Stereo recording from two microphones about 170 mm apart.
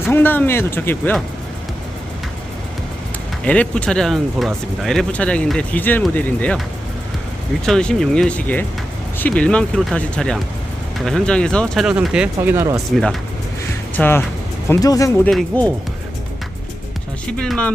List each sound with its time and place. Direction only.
0.1 s speech: 10° left (ahead or behind)
3.4 s speech: 10° left (ahead or behind)
7.6 s speech: 5° left (ahead or behind); by 12.7 s 15° right (ahead or behind)
12.7 s speech: centre (ahead or behind); by 15.1 s 20° left (ahead or behind)
15.2 s speech: 5° left (ahead or behind)
17.2 s speech: 5° left (ahead or behind)